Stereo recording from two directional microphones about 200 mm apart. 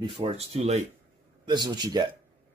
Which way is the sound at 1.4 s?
20° right (ahead or behind).